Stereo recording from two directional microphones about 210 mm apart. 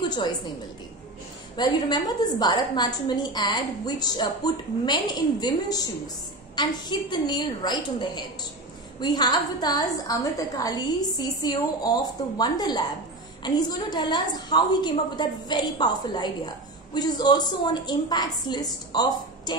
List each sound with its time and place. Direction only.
1.6 s a woman's voice: 20° left (ahead or behind)